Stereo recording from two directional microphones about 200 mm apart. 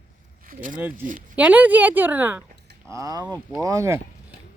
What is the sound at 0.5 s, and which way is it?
Speech, 40° right (ahead or behind).